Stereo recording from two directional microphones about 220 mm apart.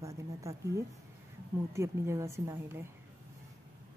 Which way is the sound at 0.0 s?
15° right (ahead or behind).